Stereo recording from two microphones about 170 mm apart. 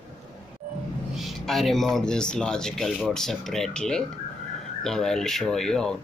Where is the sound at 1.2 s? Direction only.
Centre (ahead or behind).